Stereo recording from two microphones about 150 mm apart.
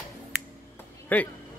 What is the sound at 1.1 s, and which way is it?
Speech, 10° left (ahead or behind).